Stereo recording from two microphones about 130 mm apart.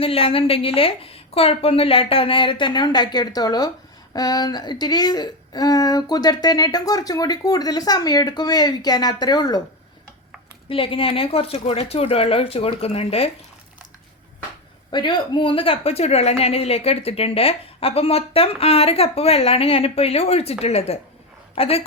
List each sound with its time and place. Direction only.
0.0 s a woman's voice: 45° left (ahead or behind)
10.7 s speech: 45° left (ahead or behind)
14.9 s speech: 40° left (ahead or behind)